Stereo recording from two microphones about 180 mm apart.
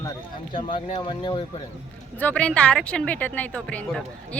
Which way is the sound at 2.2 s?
5° left (ahead or behind).